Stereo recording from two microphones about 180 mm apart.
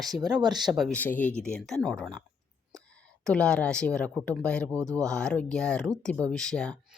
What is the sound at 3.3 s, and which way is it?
Speech, 5° left (ahead or behind).